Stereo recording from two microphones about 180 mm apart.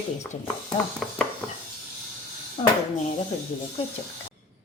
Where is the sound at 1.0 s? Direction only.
Centre (ahead or behind).